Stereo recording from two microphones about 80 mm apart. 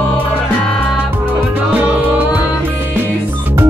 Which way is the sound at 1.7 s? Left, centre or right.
Right.